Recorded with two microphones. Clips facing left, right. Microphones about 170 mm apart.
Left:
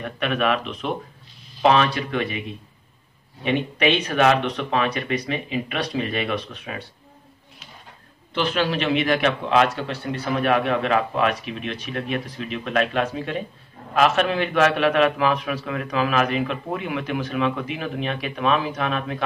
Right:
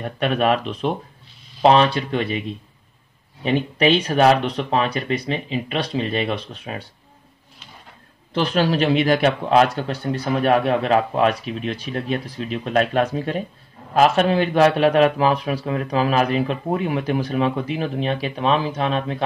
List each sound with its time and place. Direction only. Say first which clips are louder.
0.0 s a man's voice: right 3 dB; 35° right (ahead or behind)
3.4 s a man's voice: right 3 dB; 35° right (ahead or behind)
8.4 s a man's voice: right 4 dB; 40° right (ahead or behind)